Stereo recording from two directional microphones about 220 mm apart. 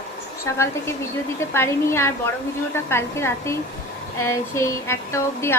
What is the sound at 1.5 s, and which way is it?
Speech, 10° left (ahead or behind).